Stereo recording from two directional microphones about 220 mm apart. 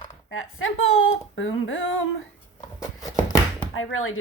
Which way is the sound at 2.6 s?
15° left (ahead or behind).